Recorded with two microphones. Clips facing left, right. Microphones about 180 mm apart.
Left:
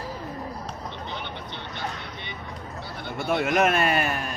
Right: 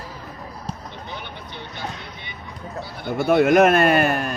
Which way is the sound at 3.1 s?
55° right (ahead or behind).